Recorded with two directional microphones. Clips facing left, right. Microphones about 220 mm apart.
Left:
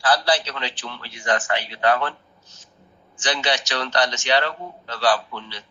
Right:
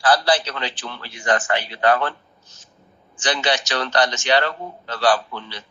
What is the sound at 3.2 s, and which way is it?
A man's voice, 50° right (ahead or behind).